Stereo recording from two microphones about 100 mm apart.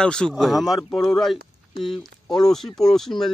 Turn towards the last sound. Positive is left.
turn(degrees=5)  # may be behind; listen again after turning